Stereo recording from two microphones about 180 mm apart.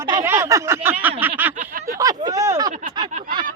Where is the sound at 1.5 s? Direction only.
45° right (ahead or behind).